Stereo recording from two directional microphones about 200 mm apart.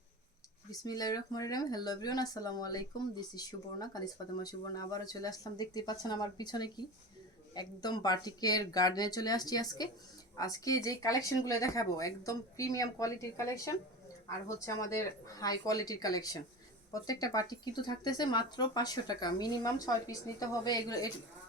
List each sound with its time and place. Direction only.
0.7 s speech: 20° left (ahead or behind)